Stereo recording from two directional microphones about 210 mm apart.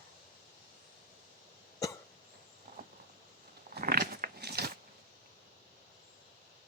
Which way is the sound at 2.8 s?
45° right (ahead or behind).